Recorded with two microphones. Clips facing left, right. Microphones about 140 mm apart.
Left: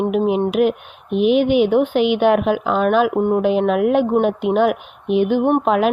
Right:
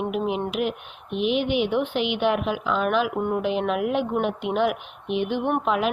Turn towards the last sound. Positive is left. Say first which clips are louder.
# left 7 dB
turn(degrees=45)  # may be behind; listen again after turning